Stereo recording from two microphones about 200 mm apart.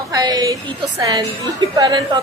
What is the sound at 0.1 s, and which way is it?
A woman's voice, 20° right (ahead or behind).